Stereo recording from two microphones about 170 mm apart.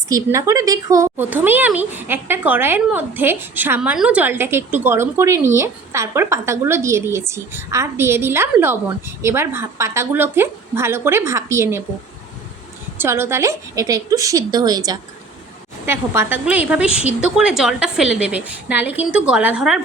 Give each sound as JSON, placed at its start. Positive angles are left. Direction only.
{"t": 0.1, "sound": "speech", "side_deg": -15}
{"t": 13.0, "sound": "a woman's voice", "side_deg": -15}